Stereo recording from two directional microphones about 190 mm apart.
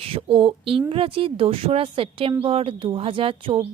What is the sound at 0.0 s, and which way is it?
A woman's voice, 30° right (ahead or behind).